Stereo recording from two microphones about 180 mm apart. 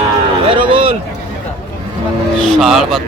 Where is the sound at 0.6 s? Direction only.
30° right (ahead or behind).